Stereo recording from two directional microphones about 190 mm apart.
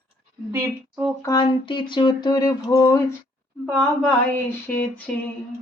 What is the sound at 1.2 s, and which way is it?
Speech, 20° left (ahead or behind).